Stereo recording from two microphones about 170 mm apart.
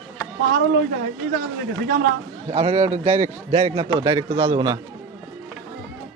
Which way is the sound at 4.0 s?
20° right (ahead or behind).